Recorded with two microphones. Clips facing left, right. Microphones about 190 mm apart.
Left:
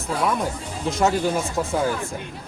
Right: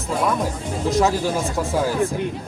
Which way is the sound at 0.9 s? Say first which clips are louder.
Right 2 dB; centre (ahead or behind).